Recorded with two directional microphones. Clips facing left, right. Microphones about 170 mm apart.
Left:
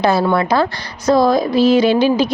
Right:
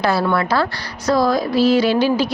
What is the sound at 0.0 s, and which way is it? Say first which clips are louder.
A woman's voice: left 3 dB; 20° left (ahead or behind).